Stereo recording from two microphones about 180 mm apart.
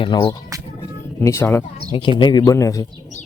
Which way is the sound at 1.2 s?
15° left (ahead or behind).